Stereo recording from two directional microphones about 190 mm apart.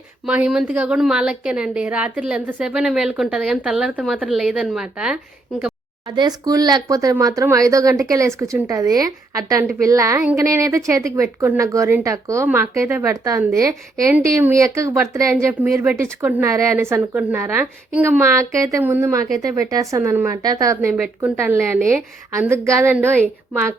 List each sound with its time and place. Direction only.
0.3 s a woman's voice: 5° right (ahead or behind)
6.1 s a woman's voice: 20° right (ahead or behind)